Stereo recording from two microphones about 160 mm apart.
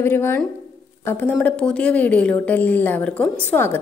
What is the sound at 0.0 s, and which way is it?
A woman's voice, 15° left (ahead or behind).